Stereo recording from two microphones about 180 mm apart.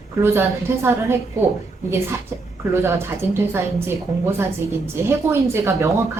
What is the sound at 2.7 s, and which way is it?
A woman's voice, 15° right (ahead or behind).